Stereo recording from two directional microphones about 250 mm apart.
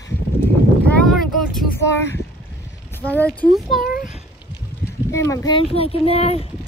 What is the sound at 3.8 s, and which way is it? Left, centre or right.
Speech, left.